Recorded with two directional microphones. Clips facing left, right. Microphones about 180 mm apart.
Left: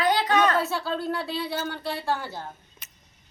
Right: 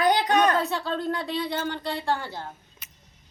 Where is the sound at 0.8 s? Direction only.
5° left (ahead or behind).